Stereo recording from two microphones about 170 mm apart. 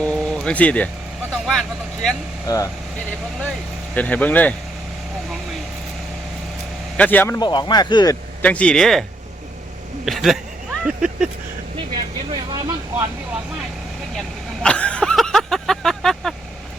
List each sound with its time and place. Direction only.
0.0 s a sound: 5° left (ahead or behind)
1.3 s vehicle: centre (ahead or behind)
2.5 s speech: 20° left (ahead or behind)
3.9 s speech: 10° left (ahead or behind)
6.9 s speech: 10° left (ahead or behind)
7.3 s speech: 25° left (ahead or behind)
8.4 s speech: 10° left (ahead or behind)
10.1 s speech: centre (ahead or behind)
12.5 s vehicle: 20° right (ahead or behind)
14.6 s a sound: 5° left (ahead or behind)